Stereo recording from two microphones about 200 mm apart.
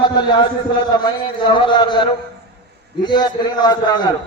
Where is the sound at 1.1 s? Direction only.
25° left (ahead or behind).